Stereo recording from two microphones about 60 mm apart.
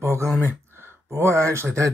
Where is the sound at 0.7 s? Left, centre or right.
Right.